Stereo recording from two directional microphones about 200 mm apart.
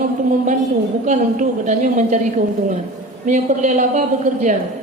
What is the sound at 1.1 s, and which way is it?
A woman's voice, 40° right (ahead or behind).